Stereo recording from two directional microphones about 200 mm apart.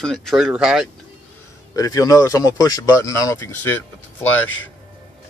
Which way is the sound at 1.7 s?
15° left (ahead or behind).